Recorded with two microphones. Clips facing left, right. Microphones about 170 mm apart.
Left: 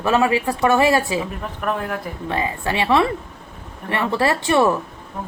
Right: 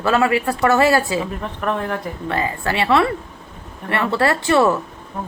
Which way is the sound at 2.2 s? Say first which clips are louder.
Right 1 dB; 15° left (ahead or behind).